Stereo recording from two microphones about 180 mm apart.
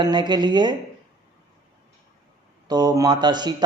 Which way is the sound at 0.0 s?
25° right (ahead or behind).